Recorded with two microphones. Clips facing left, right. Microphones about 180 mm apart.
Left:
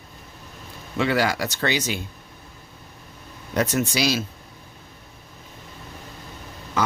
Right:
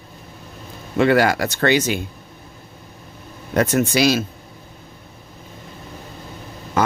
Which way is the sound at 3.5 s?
55° right (ahead or behind).